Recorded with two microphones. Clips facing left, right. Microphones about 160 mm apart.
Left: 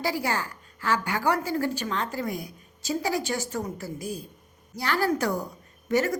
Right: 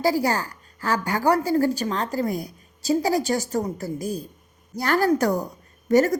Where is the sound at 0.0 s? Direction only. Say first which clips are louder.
Right 6 dB; 40° right (ahead or behind).